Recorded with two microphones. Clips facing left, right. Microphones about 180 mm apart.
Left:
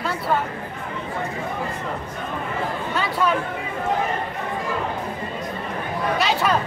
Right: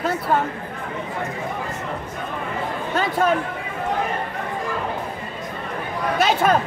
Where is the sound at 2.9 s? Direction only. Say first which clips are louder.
Right 3 dB; 45° right (ahead or behind).